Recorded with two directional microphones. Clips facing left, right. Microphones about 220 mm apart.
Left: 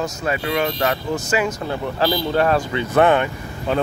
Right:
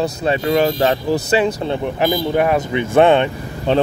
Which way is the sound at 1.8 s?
20° right (ahead or behind).